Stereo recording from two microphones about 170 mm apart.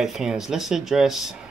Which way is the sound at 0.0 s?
Centre (ahead or behind).